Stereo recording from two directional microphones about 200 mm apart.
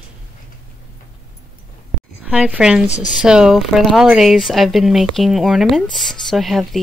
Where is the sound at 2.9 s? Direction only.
35° left (ahead or behind).